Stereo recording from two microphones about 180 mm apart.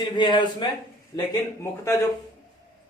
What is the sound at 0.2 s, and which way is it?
Speech, 25° left (ahead or behind).